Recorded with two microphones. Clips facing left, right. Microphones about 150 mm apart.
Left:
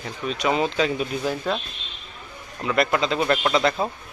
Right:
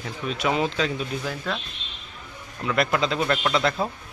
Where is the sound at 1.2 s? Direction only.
25° left (ahead or behind).